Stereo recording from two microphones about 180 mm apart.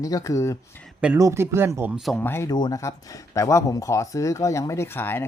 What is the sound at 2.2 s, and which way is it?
Speech, 15° left (ahead or behind).